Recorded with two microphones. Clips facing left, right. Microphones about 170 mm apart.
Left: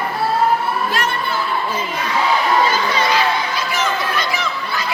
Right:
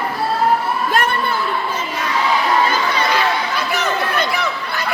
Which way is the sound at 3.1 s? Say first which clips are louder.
Even; 60° right (ahead or behind).